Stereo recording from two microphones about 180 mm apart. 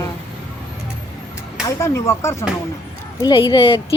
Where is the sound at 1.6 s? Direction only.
15° left (ahead or behind).